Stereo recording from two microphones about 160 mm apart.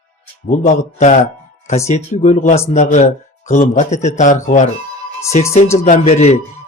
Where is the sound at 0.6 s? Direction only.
50° left (ahead or behind).